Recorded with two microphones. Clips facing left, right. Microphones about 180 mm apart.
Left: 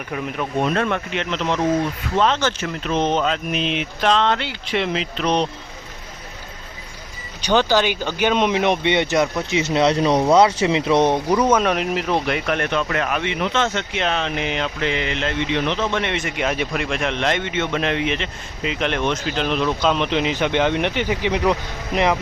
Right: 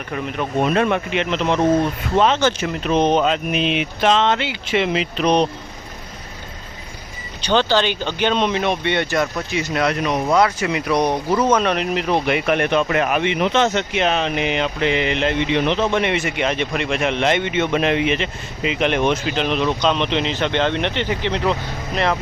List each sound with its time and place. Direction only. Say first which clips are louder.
0.1 s speech: right 1 dB; centre (ahead or behind)
0.7 s speech: right 3 dB; 15° right (ahead or behind)
7.4 s speech: even; 10° left (ahead or behind)